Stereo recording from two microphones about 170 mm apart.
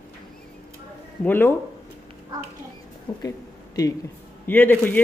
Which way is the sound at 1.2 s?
10° left (ahead or behind).